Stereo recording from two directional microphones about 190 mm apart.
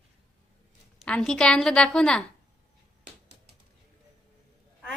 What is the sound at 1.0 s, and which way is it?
A woman's voice, 5° left (ahead or behind).